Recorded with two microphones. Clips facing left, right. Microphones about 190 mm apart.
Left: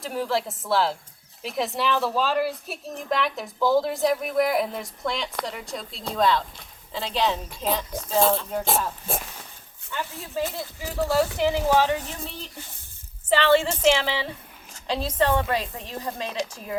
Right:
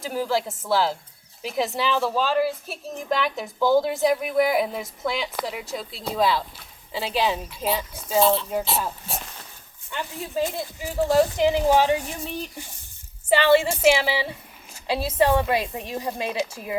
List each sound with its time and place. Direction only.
0.0 s a woman's voice: centre (ahead or behind)
9.1 s speech: 50° left (ahead or behind)
9.9 s speech: 15° right (ahead or behind)